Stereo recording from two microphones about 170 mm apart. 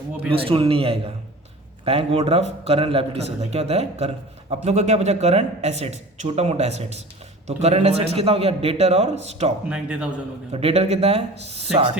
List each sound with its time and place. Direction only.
0.3 s a man's voice: 30° right (ahead or behind)
9.6 s a man's voice: 5° right (ahead or behind)
10.5 s a man's voice: 35° right (ahead or behind)